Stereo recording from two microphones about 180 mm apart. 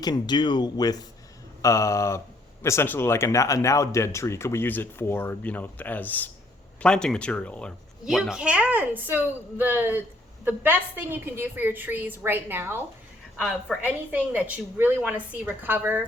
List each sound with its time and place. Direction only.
0.0 s a woman's voice: 25° left (ahead or behind); by 16.0 s 10° right (ahead or behind)